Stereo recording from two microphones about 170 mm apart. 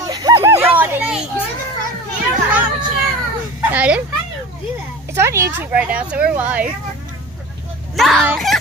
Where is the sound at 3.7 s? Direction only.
10° right (ahead or behind).